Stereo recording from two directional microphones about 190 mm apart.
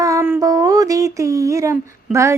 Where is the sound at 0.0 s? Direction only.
15° right (ahead or behind).